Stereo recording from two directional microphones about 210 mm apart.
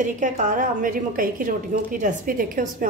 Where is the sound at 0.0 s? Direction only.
35° right (ahead or behind).